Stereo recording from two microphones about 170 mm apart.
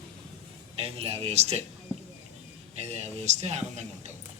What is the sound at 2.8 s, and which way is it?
A man's voice, 40° right (ahead or behind).